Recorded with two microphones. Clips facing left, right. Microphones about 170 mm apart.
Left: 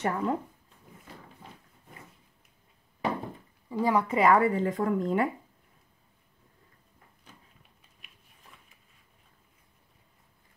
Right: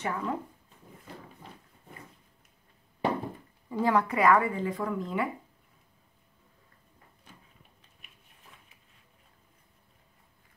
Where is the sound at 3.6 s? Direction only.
10° left (ahead or behind).